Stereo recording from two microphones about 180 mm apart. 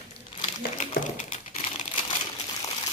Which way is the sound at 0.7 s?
45° left (ahead or behind).